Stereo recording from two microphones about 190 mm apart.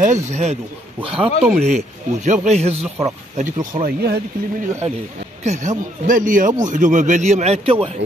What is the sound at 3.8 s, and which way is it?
Speech, 55° right (ahead or behind).